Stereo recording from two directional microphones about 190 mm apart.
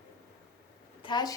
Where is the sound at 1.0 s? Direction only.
20° left (ahead or behind).